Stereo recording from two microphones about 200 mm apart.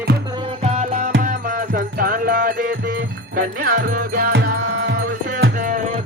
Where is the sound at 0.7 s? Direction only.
40° right (ahead or behind).